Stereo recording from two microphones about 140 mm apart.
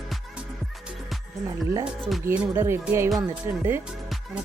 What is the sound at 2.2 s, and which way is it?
Speech, 15° right (ahead or behind).